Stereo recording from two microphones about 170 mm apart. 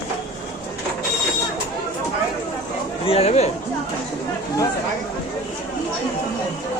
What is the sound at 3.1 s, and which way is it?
Chatter, 35° left (ahead or behind).